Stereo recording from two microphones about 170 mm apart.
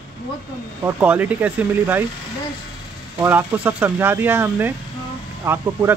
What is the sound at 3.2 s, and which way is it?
A man's voice, 10° right (ahead or behind).